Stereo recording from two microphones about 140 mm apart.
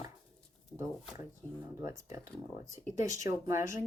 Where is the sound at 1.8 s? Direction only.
20° right (ahead or behind).